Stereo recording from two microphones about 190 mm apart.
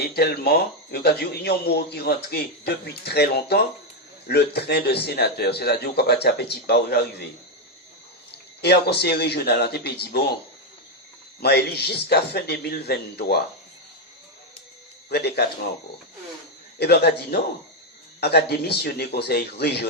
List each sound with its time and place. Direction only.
0.0 s speech: 55° left (ahead or behind)
8.3 s speech: 60° left (ahead or behind)
11.3 s speech: 55° left (ahead or behind)
15.1 s speech: 60° left (ahead or behind)
16.7 s speech: 60° left (ahead or behind)